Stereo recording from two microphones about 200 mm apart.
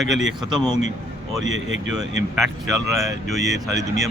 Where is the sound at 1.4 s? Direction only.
65° right (ahead or behind).